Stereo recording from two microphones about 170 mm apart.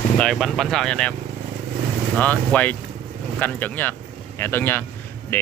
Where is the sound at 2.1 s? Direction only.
10° left (ahead or behind).